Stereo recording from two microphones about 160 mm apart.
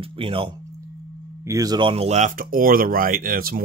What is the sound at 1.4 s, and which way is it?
Speech, 20° right (ahead or behind).